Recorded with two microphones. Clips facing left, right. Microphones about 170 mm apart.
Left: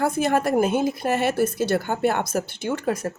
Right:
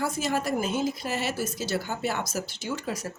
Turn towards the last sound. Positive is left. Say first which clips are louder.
# left 7 dB
turn(degrees=55)  # may be behind; listen again after turning